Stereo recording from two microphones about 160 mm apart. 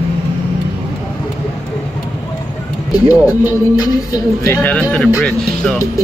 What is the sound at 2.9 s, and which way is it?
Speech, 25° left (ahead or behind).